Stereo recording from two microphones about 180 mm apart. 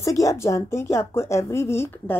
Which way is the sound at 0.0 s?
20° left (ahead or behind).